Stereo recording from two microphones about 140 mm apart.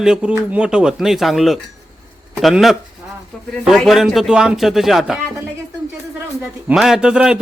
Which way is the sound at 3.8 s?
Centre (ahead or behind).